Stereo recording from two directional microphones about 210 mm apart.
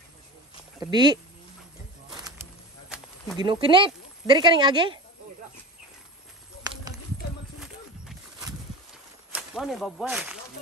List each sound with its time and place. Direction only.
0.7 s speech: 20° right (ahead or behind)
2.1 s music: 15° right (ahead or behind)
3.3 s speech: 25° right (ahead or behind)
9.3 s speech: centre (ahead or behind)